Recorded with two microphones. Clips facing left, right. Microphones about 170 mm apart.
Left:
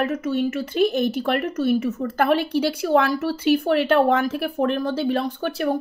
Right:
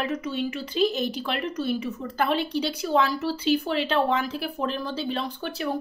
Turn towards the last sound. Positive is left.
turn(degrees=55)  # may be behind; listen again after turning